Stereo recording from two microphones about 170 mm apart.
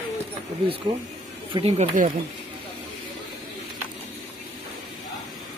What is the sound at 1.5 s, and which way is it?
Speech, 35° right (ahead or behind).